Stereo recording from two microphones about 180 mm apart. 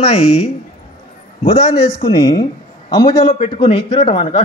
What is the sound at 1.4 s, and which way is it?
Speech, 35° left (ahead or behind).